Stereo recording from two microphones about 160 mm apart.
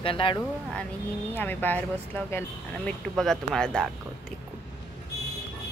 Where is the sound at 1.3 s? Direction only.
10° left (ahead or behind).